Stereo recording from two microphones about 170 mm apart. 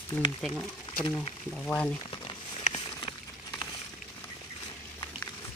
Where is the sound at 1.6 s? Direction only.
5° left (ahead or behind).